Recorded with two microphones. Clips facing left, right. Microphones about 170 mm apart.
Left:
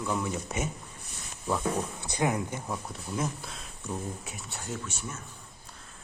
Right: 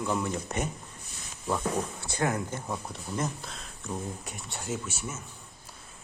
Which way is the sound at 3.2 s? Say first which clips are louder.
Even; 5° left (ahead or behind).